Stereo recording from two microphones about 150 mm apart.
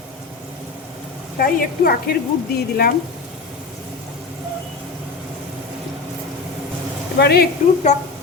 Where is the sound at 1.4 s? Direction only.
75° left (ahead or behind); by 2.9 s 90° left.